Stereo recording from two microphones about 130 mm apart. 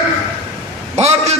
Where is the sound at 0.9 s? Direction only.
55° right (ahead or behind).